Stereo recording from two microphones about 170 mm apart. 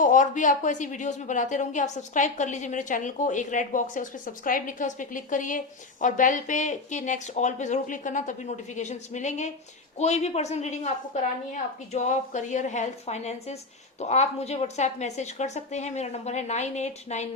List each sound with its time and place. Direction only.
0.0 s a woman's voice: 50° left (ahead or behind)